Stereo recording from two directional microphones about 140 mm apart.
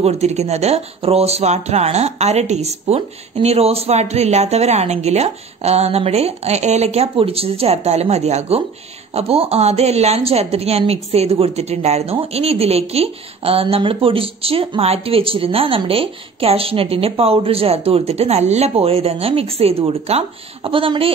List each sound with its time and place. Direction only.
0.0 s speech: 50° right (ahead or behind)